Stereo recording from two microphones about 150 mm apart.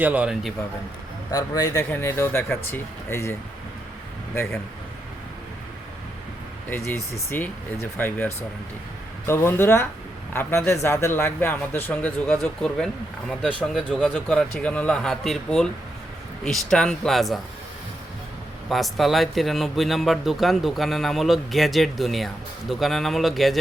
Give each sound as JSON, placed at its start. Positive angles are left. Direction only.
{"t": 0.0, "sound": "a man's voice", "side_deg": -10}
{"t": 1.3, "sound": "speech", "side_deg": 25}
{"t": 6.7, "sound": "speech", "side_deg": 15}
{"t": 18.7, "sound": "speech", "side_deg": 0}